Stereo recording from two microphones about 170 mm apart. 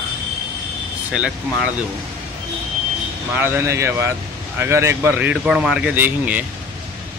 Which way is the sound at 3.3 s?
15° right (ahead or behind).